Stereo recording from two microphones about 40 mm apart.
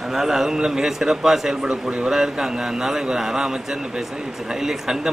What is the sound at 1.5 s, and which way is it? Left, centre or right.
A man's voice, right.